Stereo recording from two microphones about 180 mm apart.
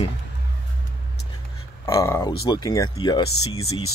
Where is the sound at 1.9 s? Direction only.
15° left (ahead or behind).